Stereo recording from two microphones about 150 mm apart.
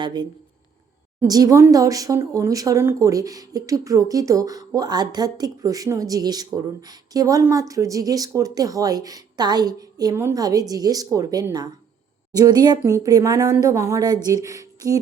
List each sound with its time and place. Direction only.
0.0 s speech: 30° right (ahead or behind)
1.3 s speech: 25° right (ahead or behind)